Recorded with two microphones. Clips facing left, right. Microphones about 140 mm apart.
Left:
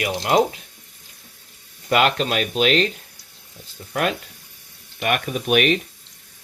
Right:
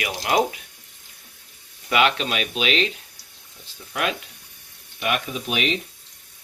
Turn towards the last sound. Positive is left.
turn(degrees=60)  # may be behind; listen again after turning